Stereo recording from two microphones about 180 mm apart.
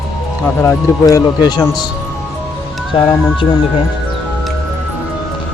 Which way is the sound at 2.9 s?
30° left (ahead or behind).